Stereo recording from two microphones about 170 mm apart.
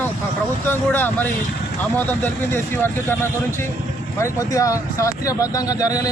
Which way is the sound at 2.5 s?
15° left (ahead or behind).